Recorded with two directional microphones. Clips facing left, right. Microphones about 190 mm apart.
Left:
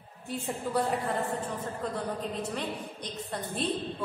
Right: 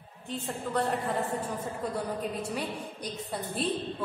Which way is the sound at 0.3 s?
5° left (ahead or behind).